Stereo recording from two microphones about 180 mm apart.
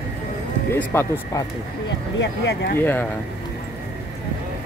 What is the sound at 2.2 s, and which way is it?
Speech, 75° left (ahead or behind).